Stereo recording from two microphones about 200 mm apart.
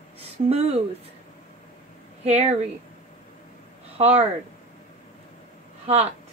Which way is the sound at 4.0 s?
30° right (ahead or behind).